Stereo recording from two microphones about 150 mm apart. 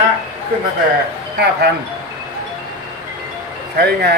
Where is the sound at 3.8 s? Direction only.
90° right.